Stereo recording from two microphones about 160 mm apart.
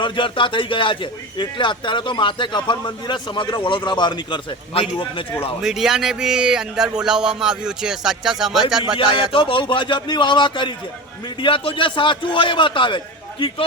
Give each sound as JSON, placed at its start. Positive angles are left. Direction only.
{"t": 0.0, "sound": "a man's voice", "side_deg": 30}
{"t": 5.6, "sound": "a man's voice", "side_deg": -5}
{"t": 9.0, "sound": "a man's voice", "side_deg": 35}